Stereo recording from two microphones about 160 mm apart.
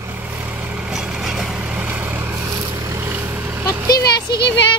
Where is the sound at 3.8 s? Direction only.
80° left.